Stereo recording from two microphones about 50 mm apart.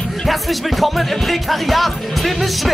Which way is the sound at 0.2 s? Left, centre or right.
Centre.